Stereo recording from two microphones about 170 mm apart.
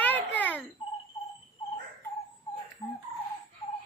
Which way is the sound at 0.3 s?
10° left (ahead or behind).